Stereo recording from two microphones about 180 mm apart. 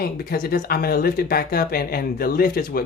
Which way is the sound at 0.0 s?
55° left (ahead or behind).